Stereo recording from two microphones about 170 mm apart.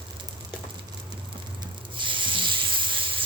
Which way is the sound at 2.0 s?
30° right (ahead or behind).